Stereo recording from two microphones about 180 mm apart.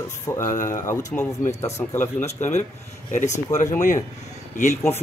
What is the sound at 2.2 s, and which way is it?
Speech, 40° left (ahead or behind).